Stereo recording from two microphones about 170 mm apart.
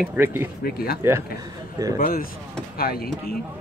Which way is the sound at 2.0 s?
55° left (ahead or behind).